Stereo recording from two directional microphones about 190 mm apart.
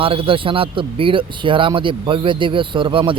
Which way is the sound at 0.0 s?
30° right (ahead or behind).